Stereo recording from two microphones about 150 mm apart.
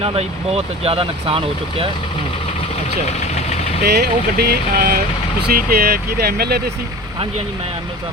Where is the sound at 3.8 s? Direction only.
90° right.